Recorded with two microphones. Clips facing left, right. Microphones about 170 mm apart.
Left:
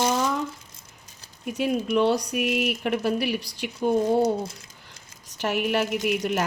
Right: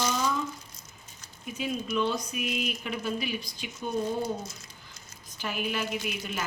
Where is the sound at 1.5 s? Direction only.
70° left (ahead or behind).